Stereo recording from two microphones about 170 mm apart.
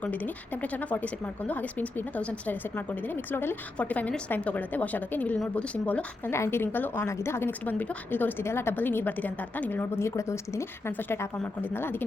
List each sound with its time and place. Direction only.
0.0 s speech: 10° left (ahead or behind)